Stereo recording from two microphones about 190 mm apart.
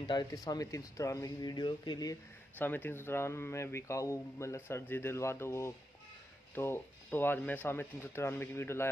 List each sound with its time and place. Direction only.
0.0 s speech: 20° left (ahead or behind)
2.6 s speech: 10° left (ahead or behind)